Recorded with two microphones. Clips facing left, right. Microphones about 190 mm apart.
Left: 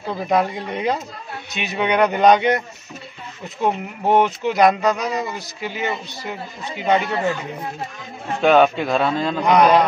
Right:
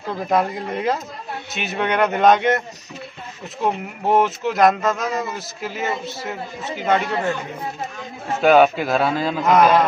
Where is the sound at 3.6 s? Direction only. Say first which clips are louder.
Left 1 dB; centre (ahead or behind).